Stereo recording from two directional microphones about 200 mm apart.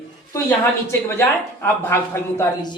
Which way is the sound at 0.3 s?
10° left (ahead or behind).